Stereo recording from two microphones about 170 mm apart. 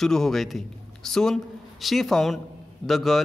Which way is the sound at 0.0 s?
Centre (ahead or behind).